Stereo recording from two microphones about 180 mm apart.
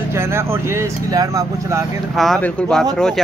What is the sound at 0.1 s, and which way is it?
Speech, 15° right (ahead or behind).